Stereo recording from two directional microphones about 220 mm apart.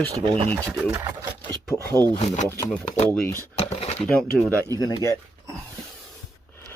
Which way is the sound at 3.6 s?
30° left (ahead or behind).